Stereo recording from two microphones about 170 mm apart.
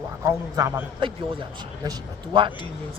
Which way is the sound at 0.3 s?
15° right (ahead or behind).